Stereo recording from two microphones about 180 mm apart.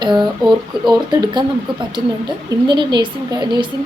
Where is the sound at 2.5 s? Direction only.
25° right (ahead or behind).